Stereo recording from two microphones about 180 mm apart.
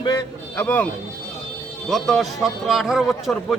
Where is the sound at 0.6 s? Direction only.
10° left (ahead or behind).